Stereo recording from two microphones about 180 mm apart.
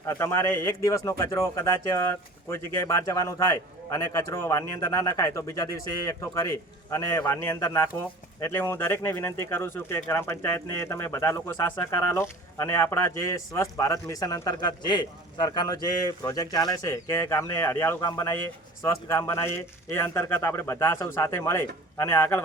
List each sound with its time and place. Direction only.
0.0 s speech: 15° left (ahead or behind)